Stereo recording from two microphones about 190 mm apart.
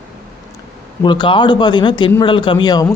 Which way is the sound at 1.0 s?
25° left (ahead or behind).